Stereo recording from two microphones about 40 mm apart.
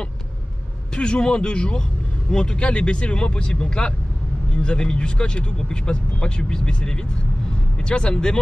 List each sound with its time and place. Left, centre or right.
0.9 s speech: left